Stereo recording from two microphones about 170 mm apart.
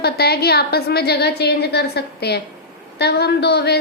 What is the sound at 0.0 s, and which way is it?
Speech, 70° left (ahead or behind).